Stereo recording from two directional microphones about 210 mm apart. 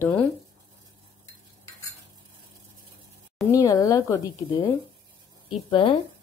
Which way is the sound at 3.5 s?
15° left (ahead or behind).